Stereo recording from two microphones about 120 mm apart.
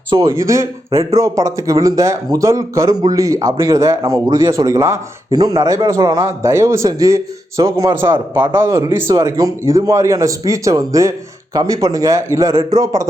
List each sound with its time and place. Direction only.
0.1 s a man's voice: 25° right (ahead or behind)